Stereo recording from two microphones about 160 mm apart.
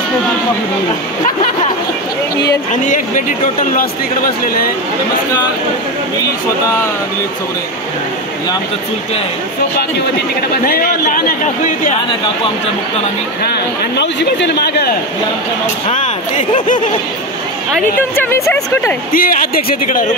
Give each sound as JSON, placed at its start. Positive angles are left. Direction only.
{"t": 2.7, "sound": "speech", "side_deg": 55}
{"t": 10.6, "sound": "speech", "side_deg": 65}
{"t": 13.9, "sound": "speech", "side_deg": 90}
{"t": 15.9, "sound": "speech", "side_deg": 50}
{"t": 18.1, "sound": "speech", "side_deg": 15}
{"t": 19.1, "sound": "speech", "side_deg": 65}